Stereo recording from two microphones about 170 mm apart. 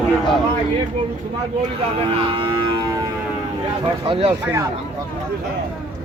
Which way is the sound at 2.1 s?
30° right (ahead or behind).